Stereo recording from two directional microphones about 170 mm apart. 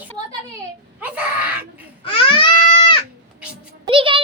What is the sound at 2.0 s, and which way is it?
Baby cry, 30° left (ahead or behind).